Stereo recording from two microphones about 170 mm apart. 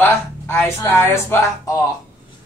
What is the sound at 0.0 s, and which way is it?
Speech, 15° left (ahead or behind).